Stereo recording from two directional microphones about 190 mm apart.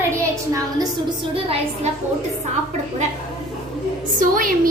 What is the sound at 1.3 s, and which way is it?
Speech, 30° right (ahead or behind).